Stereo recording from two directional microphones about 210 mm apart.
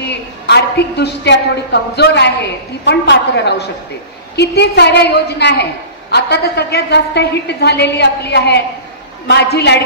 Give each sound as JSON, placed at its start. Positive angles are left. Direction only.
{"t": 0.0, "sound": "a woman's voice", "side_deg": 50}